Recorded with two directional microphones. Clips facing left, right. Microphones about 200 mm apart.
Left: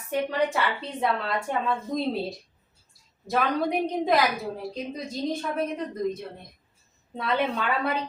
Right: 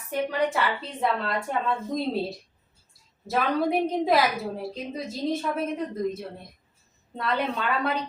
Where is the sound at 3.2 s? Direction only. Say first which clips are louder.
Right 1 dB; 5° right (ahead or behind).